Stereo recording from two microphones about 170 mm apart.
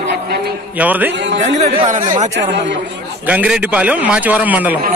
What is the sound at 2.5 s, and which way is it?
Speech, 90° right.